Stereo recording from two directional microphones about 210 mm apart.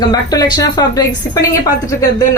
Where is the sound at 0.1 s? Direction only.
20° left (ahead or behind).